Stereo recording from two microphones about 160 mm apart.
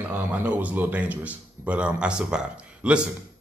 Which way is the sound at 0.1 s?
10° right (ahead or behind).